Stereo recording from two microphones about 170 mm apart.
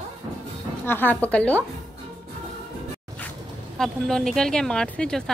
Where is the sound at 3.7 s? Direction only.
Centre (ahead or behind).